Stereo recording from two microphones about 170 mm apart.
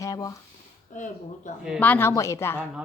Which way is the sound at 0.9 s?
50° left (ahead or behind).